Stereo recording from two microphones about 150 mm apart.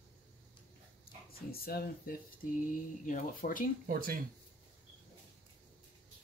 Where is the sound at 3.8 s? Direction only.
75° right (ahead or behind).